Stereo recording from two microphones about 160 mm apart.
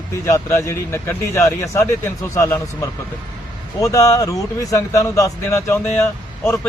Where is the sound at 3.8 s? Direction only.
20° left (ahead or behind).